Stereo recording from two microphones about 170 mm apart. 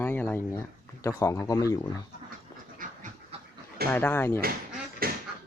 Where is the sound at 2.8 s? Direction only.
55° right (ahead or behind).